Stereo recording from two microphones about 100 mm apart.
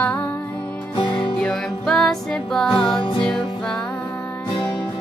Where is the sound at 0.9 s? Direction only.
50° left (ahead or behind).